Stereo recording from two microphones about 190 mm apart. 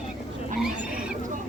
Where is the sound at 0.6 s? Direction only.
5° right (ahead or behind).